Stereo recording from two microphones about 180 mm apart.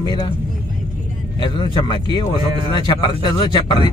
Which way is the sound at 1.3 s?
25° left (ahead or behind).